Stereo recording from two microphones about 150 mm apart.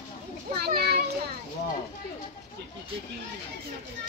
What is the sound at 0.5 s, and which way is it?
Children playing, 90° right.